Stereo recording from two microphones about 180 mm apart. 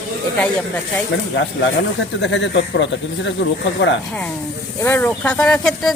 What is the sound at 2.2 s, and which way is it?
Speech, 80° left.